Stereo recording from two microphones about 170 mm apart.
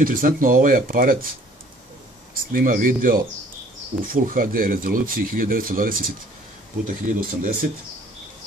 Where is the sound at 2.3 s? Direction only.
60° right (ahead or behind).